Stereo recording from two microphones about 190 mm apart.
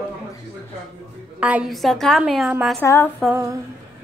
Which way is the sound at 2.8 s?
10° left (ahead or behind).